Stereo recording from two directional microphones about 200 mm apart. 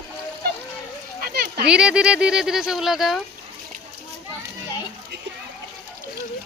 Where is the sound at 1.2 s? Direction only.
50° right (ahead or behind).